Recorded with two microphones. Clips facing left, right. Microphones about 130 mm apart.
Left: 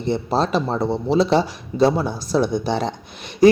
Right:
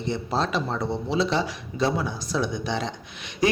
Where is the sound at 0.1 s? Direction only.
35° left (ahead or behind).